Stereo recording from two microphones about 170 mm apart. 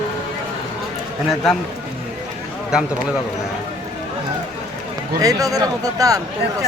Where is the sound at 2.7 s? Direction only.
5° right (ahead or behind).